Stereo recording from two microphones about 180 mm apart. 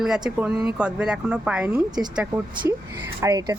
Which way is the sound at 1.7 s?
20° right (ahead or behind).